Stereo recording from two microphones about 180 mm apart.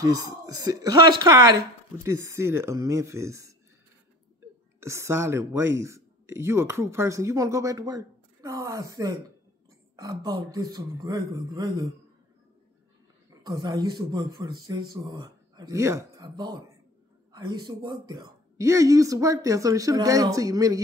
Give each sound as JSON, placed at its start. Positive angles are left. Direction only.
{"t": 0.0, "sound": "speech", "side_deg": -20}
{"t": 4.7, "sound": "speech", "side_deg": -15}
{"t": 13.5, "sound": "speech", "side_deg": -20}